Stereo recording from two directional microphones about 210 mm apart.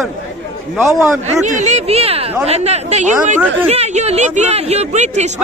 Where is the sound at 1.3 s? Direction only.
35° right (ahead or behind).